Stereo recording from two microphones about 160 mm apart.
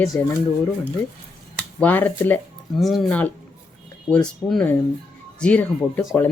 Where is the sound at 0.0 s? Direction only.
20° left (ahead or behind).